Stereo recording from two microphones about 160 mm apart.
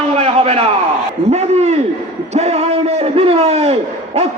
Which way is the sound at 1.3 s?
40° right (ahead or behind).